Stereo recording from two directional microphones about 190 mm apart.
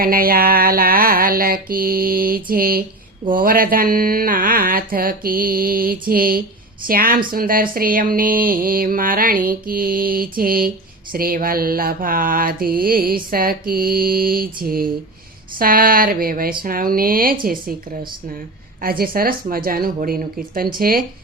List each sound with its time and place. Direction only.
0.0 s mantra: 50° right (ahead or behind)
18.8 s mantra: 50° right (ahead or behind)